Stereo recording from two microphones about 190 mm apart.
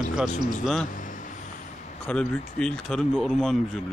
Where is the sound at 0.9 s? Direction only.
45° left (ahead or behind).